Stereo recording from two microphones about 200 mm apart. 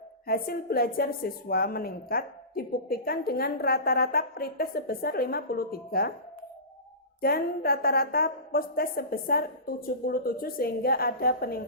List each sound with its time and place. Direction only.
0.3 s a woman's voice: 50° left (ahead or behind)
7.2 s a woman's voice: 50° left (ahead or behind)